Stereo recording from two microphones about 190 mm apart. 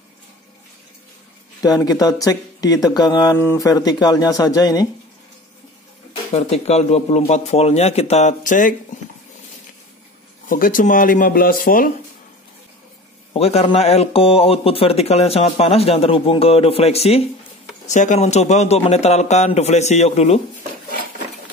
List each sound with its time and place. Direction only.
1.6 s speech: 20° left (ahead or behind)
6.3 s speech: 35° left (ahead or behind)
10.5 s speech: 45° left (ahead or behind)
13.3 s speech: 35° left (ahead or behind)